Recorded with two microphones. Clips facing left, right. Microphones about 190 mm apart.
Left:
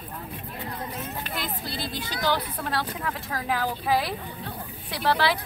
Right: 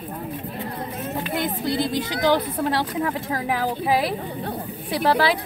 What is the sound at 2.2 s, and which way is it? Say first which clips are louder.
A woman's voice: right 6 dB; 20° right (ahead or behind).